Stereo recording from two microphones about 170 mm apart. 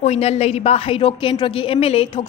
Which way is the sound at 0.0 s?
40° left (ahead or behind).